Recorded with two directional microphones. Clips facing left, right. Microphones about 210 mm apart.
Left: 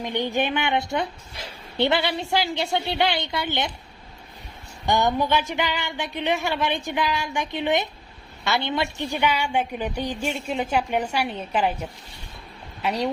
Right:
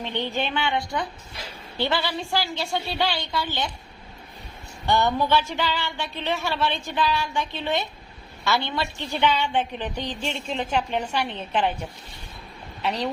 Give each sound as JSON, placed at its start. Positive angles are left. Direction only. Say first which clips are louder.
{"t": 0.0, "sound": "a woman's voice", "louder": "left 3 dB", "side_deg": 15}
{"t": 4.9, "sound": "a woman's voice", "louder": "even", "side_deg": 15}